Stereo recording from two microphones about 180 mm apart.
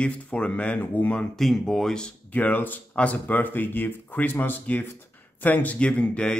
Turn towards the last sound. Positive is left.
turn(degrees=5)  # may be behind; listen again after turning